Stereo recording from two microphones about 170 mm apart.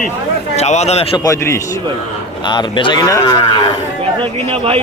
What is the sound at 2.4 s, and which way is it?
Speech, 25° left (ahead or behind).